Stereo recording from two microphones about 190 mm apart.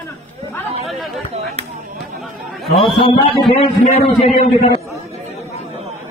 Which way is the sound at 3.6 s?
25° left (ahead or behind).